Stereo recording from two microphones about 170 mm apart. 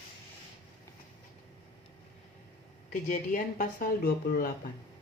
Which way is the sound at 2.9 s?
50° left (ahead or behind).